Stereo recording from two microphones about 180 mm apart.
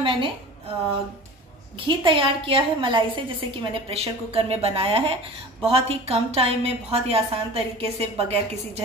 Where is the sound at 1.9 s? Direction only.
30° right (ahead or behind).